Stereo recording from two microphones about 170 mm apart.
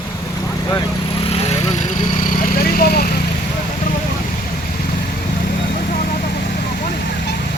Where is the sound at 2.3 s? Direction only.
55° left (ahead or behind).